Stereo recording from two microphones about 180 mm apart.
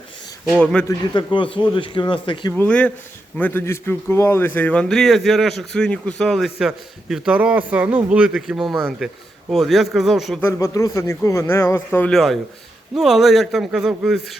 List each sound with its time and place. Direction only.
0.4 s speech: 5° left (ahead or behind)
0.9 s speech: 25° left (ahead or behind)
2.6 s a man's voice: 5° left (ahead or behind)
10.4 s a man's voice: 15° left (ahead or behind); by 14.3 s centre (ahead or behind)